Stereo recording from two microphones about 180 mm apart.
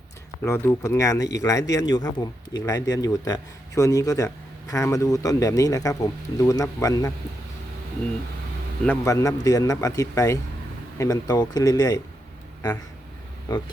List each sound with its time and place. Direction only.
0.4 s speech: 15° left (ahead or behind)
8.9 s speech: 15° left (ahead or behind)